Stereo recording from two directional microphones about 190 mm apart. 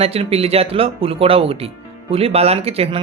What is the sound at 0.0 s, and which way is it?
Speech, 30° right (ahead or behind).